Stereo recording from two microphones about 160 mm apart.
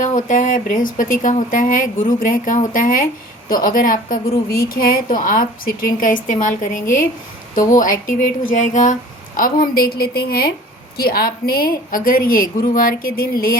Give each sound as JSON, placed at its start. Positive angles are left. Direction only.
{"t": 0.0, "sound": "a woman's voice", "side_deg": 50}